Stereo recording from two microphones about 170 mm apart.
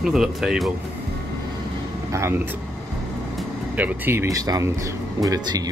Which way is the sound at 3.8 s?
10° right (ahead or behind).